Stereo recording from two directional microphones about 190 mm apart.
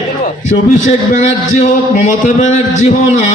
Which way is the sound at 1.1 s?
40° left (ahead or behind).